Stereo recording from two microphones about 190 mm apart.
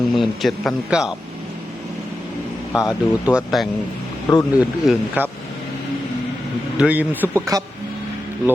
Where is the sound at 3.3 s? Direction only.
Centre (ahead or behind).